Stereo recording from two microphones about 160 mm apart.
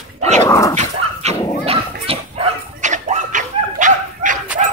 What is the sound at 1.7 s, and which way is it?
Dog, 35° right (ahead or behind).